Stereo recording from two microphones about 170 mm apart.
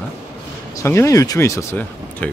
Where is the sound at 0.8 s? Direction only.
15° left (ahead or behind).